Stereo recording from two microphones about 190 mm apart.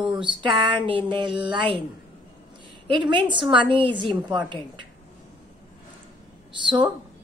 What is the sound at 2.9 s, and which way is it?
A woman's voice, 25° right (ahead or behind).